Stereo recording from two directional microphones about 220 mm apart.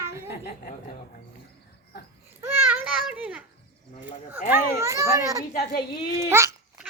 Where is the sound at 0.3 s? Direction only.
40° left (ahead or behind).